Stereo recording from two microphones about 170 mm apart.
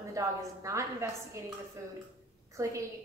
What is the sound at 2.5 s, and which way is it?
Speech, 15° right (ahead or behind).